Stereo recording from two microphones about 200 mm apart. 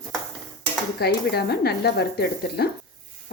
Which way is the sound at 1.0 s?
55° left (ahead or behind).